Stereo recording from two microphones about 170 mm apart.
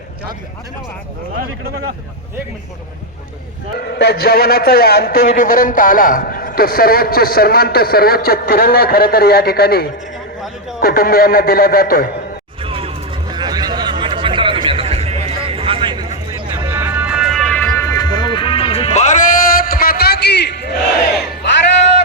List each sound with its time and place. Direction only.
3.8 s a man's voice: 75° left (ahead or behind)
12.6 s music: 35° right (ahead or behind)
13.3 s a sound: 25° right (ahead or behind)
16.6 s music: 15° right (ahead or behind); by 20.7 s 80° left